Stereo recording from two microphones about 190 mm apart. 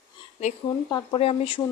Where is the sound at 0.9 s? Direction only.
25° left (ahead or behind).